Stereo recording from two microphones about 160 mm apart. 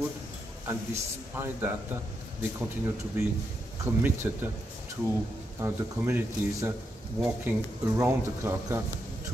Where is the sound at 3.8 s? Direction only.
15° right (ahead or behind).